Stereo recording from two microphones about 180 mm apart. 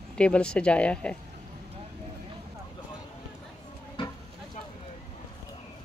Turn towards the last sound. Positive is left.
turn(degrees=30)  # may be behind; listen again after turning